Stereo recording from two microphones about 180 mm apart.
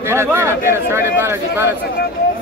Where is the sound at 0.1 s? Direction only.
15° right (ahead or behind).